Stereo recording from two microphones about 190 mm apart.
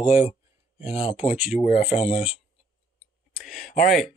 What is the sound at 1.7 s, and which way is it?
Speech, 30° left (ahead or behind).